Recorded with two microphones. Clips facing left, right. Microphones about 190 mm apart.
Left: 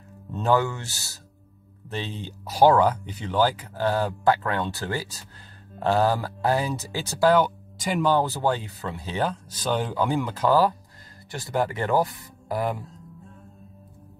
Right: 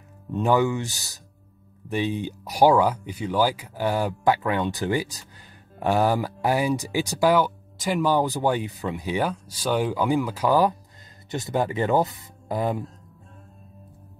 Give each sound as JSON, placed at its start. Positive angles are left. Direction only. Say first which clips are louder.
{"t": 0.3, "sound": "speech", "louder": "right 2 dB", "side_deg": -15}
{"t": 8.1, "sound": "speech", "louder": "even", "side_deg": -15}